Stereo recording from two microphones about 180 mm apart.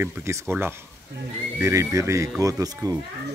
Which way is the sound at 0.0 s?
15° right (ahead or behind).